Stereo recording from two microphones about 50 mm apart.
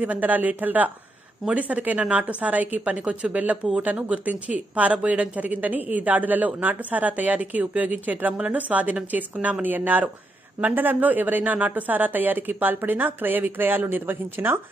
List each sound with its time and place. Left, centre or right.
0.0 s a woman's voice: right